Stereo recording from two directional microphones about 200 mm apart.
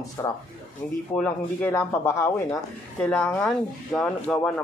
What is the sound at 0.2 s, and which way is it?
Speech, 15° left (ahead or behind).